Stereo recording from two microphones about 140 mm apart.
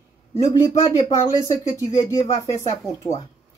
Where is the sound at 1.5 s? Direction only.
25° left (ahead or behind).